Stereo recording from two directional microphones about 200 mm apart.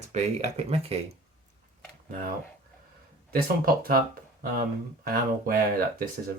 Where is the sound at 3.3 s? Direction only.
45° right (ahead or behind).